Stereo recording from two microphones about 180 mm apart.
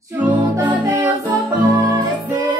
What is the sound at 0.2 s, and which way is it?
Music, 10° right (ahead or behind).